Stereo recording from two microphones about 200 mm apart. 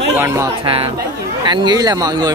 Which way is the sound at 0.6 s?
25° right (ahead or behind).